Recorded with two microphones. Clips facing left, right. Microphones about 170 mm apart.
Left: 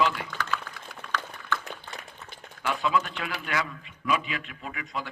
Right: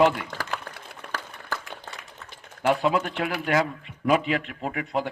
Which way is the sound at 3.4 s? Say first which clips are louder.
Right 9 dB; 45° right (ahead or behind).